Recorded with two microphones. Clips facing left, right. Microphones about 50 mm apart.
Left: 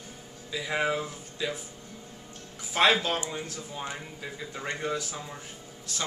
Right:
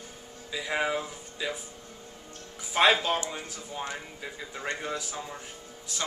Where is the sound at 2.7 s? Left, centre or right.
Centre.